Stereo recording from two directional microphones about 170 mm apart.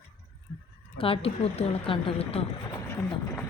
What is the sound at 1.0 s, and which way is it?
Speech, 35° left (ahead or behind).